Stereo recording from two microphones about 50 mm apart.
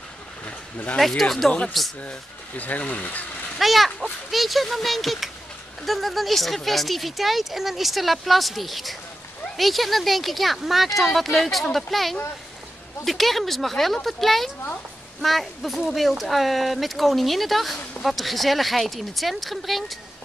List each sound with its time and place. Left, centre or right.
0.5 s a sound: left
0.9 s speech: centre
2.0 s speech: left
3.5 s speech: centre